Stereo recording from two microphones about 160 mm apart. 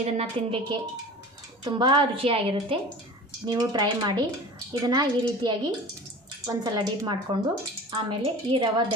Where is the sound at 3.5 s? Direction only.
25° right (ahead or behind).